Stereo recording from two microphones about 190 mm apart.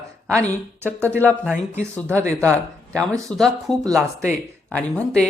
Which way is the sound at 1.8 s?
15° right (ahead or behind).